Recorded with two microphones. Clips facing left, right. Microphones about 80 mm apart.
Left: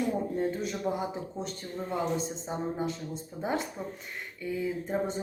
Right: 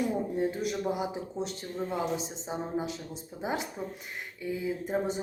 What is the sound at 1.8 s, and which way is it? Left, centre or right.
Speech, centre.